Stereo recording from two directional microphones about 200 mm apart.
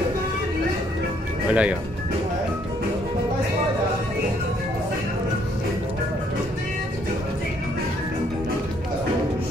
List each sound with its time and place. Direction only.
1.5 s speech: 5° right (ahead or behind)